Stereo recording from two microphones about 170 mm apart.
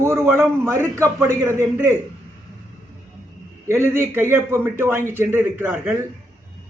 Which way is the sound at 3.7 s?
15° right (ahead or behind).